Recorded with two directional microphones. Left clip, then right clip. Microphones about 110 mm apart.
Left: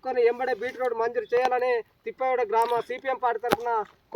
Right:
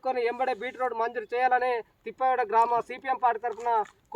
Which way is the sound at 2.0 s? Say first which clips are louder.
Even; 45° right (ahead or behind).